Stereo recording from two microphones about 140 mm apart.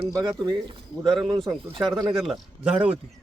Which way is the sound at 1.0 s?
Centre (ahead or behind).